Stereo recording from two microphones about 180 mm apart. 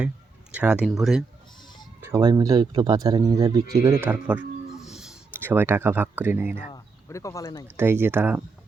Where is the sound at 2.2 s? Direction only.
20° right (ahead or behind).